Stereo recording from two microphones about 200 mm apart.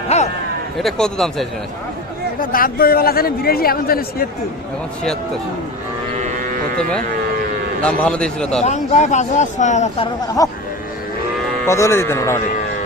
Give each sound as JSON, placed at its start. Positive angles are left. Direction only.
{"t": 0.1, "sound": "a sound", "side_deg": 30}
{"t": 0.8, "sound": "a man's voice", "side_deg": 0}
{"t": 2.4, "sound": "a man's voice", "side_deg": 45}
{"t": 6.1, "sound": "cattle", "side_deg": -40}
{"t": 8.0, "sound": "a man's voice", "side_deg": 5}
{"t": 8.6, "sound": "speech", "side_deg": 35}
{"t": 10.4, "sound": "speech", "side_deg": 15}
{"t": 11.6, "sound": "speech", "side_deg": 15}